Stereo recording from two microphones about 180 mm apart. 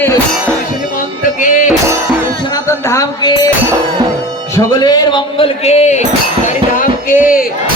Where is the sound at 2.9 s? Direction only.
20° left (ahead or behind).